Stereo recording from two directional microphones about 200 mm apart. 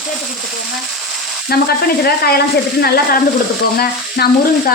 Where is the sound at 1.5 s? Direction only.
50° left (ahead or behind).